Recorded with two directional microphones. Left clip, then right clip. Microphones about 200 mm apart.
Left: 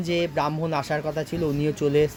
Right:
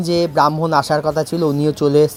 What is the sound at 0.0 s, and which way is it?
Speech, 35° right (ahead or behind).